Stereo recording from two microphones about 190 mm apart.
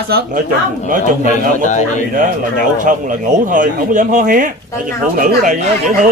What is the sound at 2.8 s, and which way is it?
Speech, 40° right (ahead or behind).